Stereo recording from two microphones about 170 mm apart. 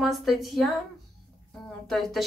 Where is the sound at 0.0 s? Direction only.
Centre (ahead or behind).